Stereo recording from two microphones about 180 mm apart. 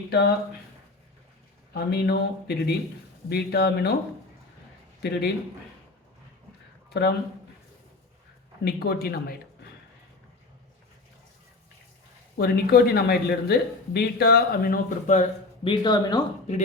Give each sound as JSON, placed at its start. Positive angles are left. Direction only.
{"t": 0.1, "sound": "speech", "side_deg": 65}
{"t": 1.7, "sound": "speech", "side_deg": 65}
{"t": 6.9, "sound": "speech", "side_deg": 65}
{"t": 8.6, "sound": "speech", "side_deg": 60}
{"t": 12.4, "sound": "speech", "side_deg": 60}
{"t": 15.6, "sound": "speech", "side_deg": 25}